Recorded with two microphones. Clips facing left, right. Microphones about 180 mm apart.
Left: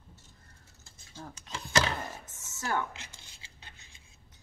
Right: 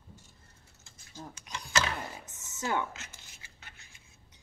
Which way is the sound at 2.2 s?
20° right (ahead or behind).